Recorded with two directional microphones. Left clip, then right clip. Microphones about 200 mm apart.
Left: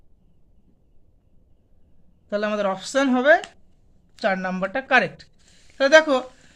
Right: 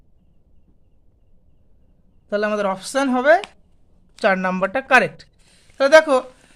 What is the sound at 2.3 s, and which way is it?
Speech, 20° right (ahead or behind).